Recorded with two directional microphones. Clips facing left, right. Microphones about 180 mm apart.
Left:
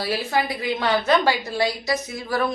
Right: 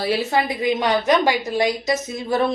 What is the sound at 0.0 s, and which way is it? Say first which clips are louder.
A woman's voice: right 3 dB; 25° right (ahead or behind).